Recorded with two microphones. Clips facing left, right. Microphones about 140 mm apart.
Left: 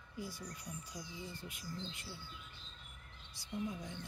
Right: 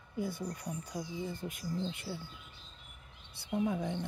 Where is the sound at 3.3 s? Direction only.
65° right (ahead or behind).